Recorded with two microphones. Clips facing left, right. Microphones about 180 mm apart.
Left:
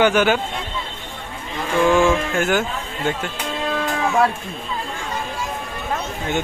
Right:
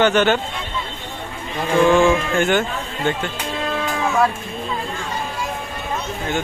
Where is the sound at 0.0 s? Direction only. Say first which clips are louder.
Even; 10° left (ahead or behind).